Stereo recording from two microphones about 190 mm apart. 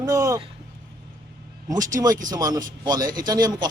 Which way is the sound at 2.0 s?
10° right (ahead or behind).